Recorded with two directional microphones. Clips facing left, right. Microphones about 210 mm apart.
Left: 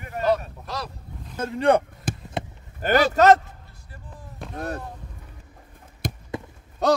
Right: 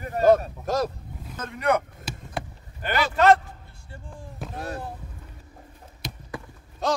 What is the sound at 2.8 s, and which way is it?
Speech, 40° left (ahead or behind).